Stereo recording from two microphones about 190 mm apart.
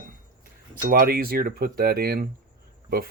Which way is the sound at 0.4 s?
50° right (ahead or behind).